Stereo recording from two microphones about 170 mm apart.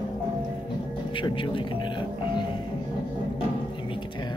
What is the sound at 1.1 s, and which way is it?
Speech, 30° left (ahead or behind).